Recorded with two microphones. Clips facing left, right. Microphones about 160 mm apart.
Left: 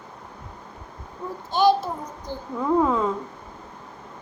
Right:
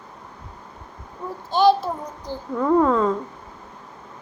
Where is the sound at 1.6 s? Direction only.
50° left (ahead or behind).